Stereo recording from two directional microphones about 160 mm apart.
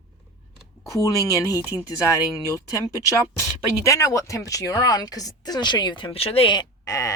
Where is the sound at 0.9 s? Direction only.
20° left (ahead or behind).